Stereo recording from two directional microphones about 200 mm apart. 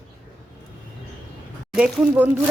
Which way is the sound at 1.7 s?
5° right (ahead or behind).